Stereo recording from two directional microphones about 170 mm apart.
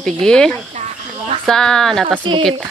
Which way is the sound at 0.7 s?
40° right (ahead or behind).